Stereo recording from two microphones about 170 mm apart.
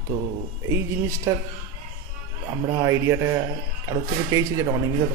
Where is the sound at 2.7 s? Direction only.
20° right (ahead or behind).